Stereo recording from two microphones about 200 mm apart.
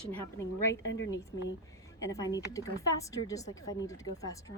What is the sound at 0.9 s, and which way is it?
Speech, 65° left (ahead or behind).